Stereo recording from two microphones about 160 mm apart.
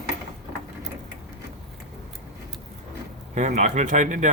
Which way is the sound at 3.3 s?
45° right (ahead or behind).